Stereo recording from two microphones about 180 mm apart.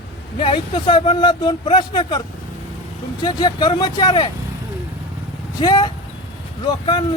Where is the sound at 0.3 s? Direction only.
30° left (ahead or behind).